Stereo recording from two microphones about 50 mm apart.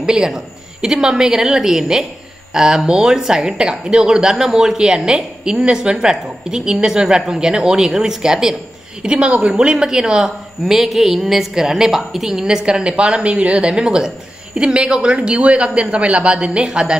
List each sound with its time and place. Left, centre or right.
0.0 s speech: centre